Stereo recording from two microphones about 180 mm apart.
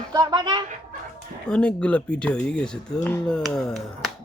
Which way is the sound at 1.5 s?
5° left (ahead or behind).